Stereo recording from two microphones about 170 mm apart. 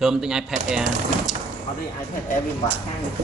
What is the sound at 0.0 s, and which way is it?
Speech, 5° right (ahead or behind).